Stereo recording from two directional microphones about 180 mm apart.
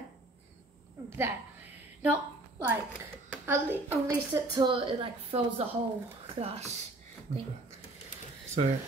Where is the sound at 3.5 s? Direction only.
10° right (ahead or behind); by 6.8 s 40° right (ahead or behind).